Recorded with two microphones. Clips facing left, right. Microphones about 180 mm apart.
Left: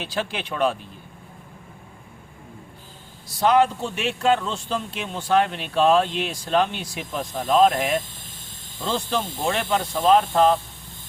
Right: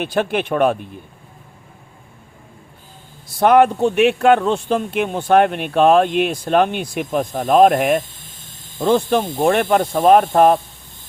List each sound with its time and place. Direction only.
0.0 s speech: 55° right (ahead or behind)
3.2 s speech: 55° right (ahead or behind)